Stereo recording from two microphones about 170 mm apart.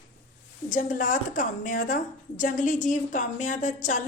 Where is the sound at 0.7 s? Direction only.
50° left (ahead or behind).